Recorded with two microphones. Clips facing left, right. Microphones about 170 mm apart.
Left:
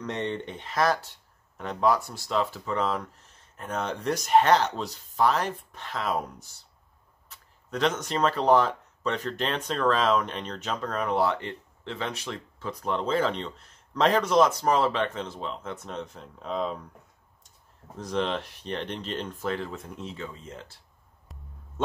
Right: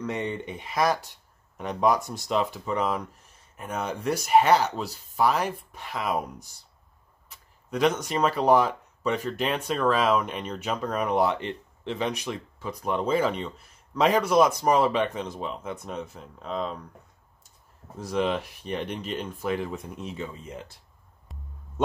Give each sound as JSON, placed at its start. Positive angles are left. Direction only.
{"t": 0.0, "sound": "speech", "side_deg": -10}
{"t": 17.9, "sound": "speech", "side_deg": -10}
{"t": 21.3, "sound": "music", "side_deg": 0}
{"t": 21.8, "sound": "a sound", "side_deg": -15}